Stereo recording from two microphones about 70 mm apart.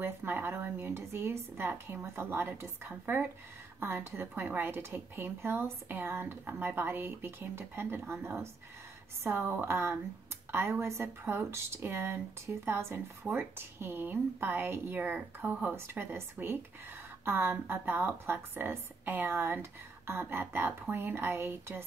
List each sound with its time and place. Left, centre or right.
0.0 s speech: right